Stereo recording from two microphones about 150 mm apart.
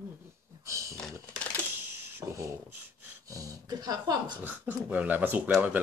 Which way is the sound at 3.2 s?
20° right (ahead or behind).